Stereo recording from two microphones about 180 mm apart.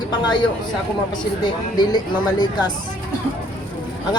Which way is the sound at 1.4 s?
25° left (ahead or behind).